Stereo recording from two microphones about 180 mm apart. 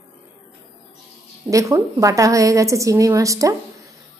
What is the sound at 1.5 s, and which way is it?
A woman's voice, 15° right (ahead or behind).